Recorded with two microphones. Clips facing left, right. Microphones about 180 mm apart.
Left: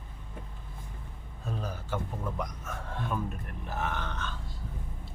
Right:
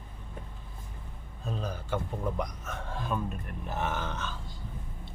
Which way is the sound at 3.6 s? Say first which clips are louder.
Right 2 dB; centre (ahead or behind).